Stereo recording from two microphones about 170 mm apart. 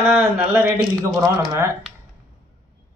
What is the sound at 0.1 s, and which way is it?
Speech, 10° right (ahead or behind).